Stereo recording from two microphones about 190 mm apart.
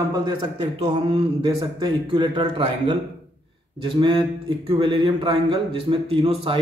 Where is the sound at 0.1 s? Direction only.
20° right (ahead or behind).